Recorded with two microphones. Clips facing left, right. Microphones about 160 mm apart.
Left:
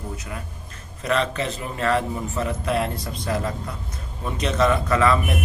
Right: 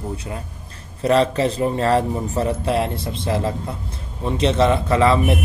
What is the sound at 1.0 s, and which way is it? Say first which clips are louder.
A man's voice: right 7 dB; 35° right (ahead or behind).